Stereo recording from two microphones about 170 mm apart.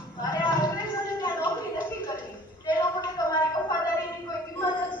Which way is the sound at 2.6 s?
25° left (ahead or behind).